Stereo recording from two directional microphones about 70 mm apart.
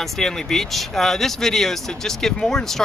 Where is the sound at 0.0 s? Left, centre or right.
Centre.